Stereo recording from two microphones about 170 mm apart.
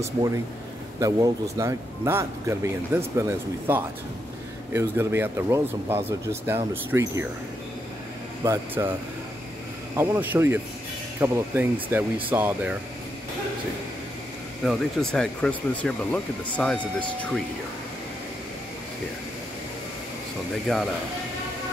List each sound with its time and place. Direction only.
0.9 s speech: 20° right (ahead or behind)
8.5 s speech: 15° right (ahead or behind)
9.9 s speech: 10° right (ahead or behind)
14.6 s speech: centre (ahead or behind)
20.7 s speech: 5° left (ahead or behind)